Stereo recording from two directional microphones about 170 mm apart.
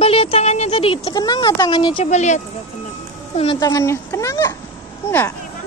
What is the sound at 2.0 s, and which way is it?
Speech, 45° left (ahead or behind).